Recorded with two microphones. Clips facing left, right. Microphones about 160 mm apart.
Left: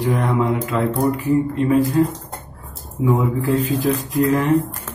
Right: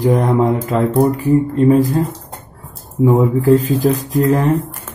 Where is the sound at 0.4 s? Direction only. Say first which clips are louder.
Right 4 dB; 40° right (ahead or behind).